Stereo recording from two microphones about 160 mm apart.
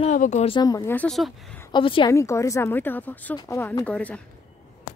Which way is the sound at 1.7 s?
30° left (ahead or behind).